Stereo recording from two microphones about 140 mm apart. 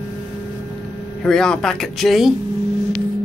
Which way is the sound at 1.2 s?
5° left (ahead or behind).